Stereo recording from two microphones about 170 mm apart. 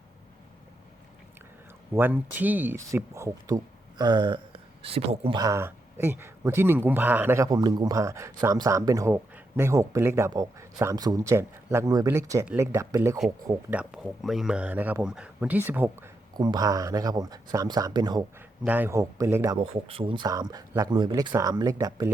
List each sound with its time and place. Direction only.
1.9 s speech: 10° right (ahead or behind); by 5.4 s 35° right (ahead or behind)
5.4 s speech: 15° right (ahead or behind)
13.7 s speech: 5° right (ahead or behind)
16.3 s speech: 25° right (ahead or behind)
18.6 s speech: 10° right (ahead or behind)
19.5 s speech: 30° right (ahead or behind)